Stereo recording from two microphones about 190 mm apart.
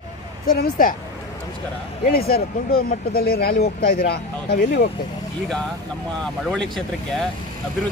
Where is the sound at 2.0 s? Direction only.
55° left (ahead or behind).